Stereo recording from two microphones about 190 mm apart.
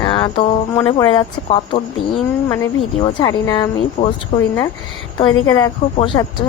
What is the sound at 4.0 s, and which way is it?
Speech, 45° left (ahead or behind).